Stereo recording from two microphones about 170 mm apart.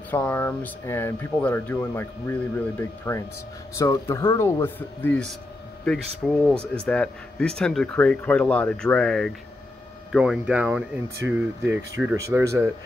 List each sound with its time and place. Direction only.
0.1 s speech: 10° left (ahead or behind); by 12.7 s 15° right (ahead or behind)